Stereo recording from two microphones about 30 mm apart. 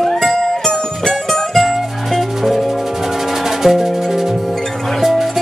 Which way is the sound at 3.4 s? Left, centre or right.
Centre.